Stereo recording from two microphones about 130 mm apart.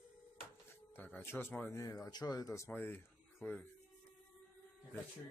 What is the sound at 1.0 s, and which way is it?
Speech, 15° left (ahead or behind).